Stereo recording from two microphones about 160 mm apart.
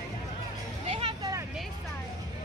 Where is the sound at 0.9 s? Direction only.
30° right (ahead or behind).